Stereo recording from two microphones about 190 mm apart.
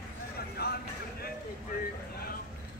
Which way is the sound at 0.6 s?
55° left (ahead or behind).